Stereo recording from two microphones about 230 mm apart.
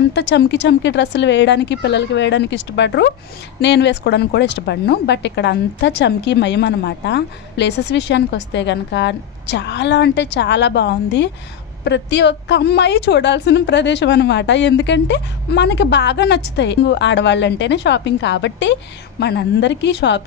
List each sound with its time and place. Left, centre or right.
0.1 s a woman's voice: left